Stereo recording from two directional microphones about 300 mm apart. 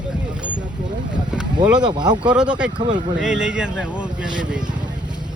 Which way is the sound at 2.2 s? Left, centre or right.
Centre.